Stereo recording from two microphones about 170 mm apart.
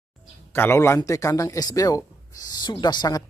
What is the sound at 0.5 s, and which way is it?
A man's voice, 15° left (ahead or behind).